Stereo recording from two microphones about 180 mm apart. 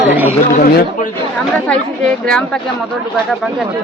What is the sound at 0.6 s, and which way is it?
Speech, 60° left (ahead or behind).